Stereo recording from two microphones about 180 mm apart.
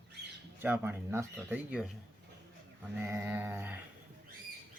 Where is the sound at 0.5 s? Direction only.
10° right (ahead or behind).